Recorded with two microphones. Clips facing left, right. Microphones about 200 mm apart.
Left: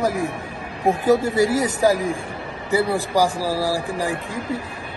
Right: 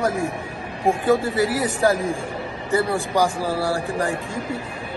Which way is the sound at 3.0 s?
35° left (ahead or behind).